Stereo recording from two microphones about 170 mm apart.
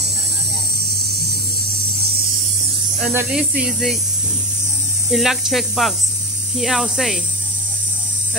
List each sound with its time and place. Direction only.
3.0 s speech: 10° right (ahead or behind)
5.1 s speech: centre (ahead or behind)